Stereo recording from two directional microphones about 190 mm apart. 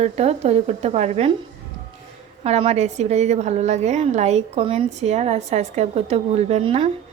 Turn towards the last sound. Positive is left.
turn(degrees=-30)  # may be behind; listen again after turning